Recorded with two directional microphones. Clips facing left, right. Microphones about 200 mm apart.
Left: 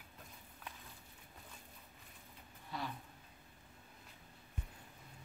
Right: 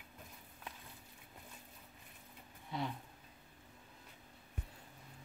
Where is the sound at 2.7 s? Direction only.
20° right (ahead or behind).